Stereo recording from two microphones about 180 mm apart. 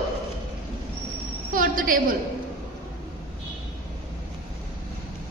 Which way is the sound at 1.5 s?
50° right (ahead or behind).